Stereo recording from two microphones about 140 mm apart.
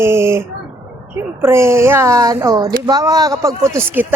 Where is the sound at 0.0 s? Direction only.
20° right (ahead or behind).